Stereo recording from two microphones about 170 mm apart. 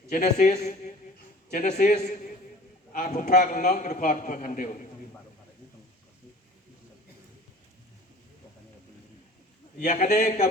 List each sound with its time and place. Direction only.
0.1 s a man's voice: 45° left (ahead or behind)
9.7 s a man's voice: 50° left (ahead or behind)
10.2 s speech: 35° left (ahead or behind)